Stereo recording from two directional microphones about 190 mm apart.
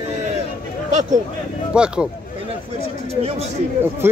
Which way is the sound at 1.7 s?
5° right (ahead or behind).